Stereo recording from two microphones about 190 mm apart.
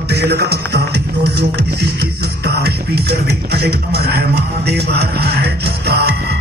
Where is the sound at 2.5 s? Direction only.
60° right (ahead or behind).